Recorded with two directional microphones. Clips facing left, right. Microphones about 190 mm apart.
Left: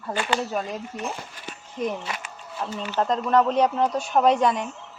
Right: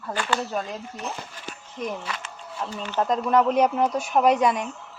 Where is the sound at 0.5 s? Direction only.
5° left (ahead or behind).